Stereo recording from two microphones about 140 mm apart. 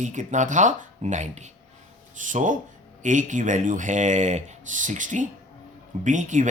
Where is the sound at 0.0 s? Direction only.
60° right (ahead or behind).